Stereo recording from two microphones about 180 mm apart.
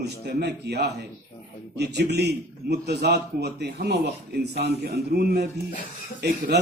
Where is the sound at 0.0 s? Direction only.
65° right (ahead or behind).